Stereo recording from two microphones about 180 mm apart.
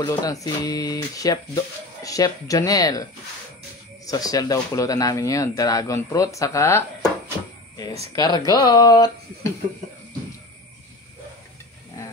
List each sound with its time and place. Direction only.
0.0 s speech: 20° left (ahead or behind)
8.2 s speech: 20° left (ahead or behind)